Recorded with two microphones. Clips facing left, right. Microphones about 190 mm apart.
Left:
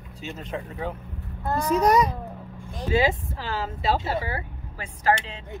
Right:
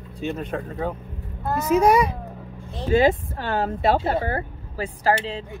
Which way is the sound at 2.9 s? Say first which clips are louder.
Right 5 dB; 50° right (ahead or behind).